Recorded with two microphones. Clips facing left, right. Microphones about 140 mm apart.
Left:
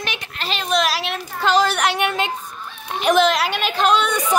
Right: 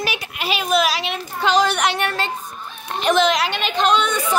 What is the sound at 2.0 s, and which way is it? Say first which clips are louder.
A child's voice: left 2 dB; 15° left (ahead or behind).